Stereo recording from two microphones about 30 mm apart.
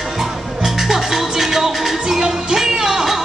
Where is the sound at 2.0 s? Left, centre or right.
Right.